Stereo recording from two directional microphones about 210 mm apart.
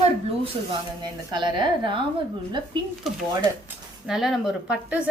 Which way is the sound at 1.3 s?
20° right (ahead or behind).